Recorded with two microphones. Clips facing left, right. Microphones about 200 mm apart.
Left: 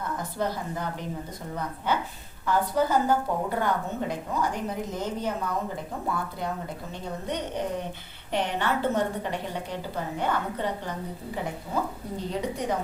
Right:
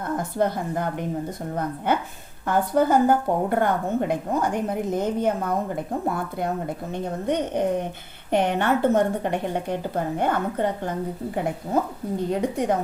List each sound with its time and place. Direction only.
0.2 s a woman's voice: 50° right (ahead or behind)
12.3 s a woman's voice: 50° right (ahead or behind)